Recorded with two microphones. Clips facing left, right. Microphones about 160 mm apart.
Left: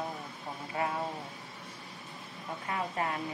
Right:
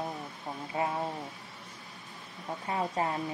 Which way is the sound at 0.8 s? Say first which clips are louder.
Right 2 dB; 20° right (ahead or behind).